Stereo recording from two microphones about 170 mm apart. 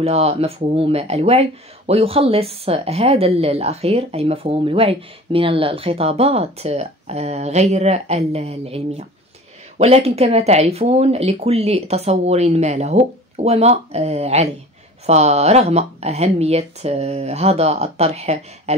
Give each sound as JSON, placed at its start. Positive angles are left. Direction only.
{"t": 0.0, "sound": "speech", "side_deg": -35}